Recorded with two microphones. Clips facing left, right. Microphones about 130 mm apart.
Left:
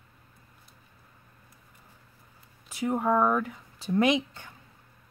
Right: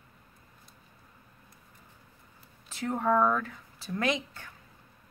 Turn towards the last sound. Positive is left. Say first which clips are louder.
# left 6 dB
turn(degrees=20)  # may be behind; listen again after turning